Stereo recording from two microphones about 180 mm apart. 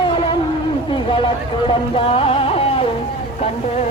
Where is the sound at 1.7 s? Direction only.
30° left (ahead or behind).